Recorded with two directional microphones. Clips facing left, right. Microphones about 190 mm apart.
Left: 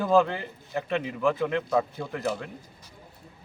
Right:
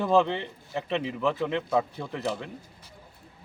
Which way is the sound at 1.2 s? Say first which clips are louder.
Left 3 dB; 5° left (ahead or behind).